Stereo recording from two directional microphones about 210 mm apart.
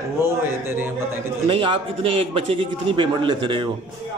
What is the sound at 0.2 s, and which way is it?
Speech, 10° right (ahead or behind).